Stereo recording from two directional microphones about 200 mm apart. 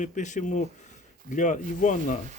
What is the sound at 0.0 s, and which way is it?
Speech, 40° left (ahead or behind).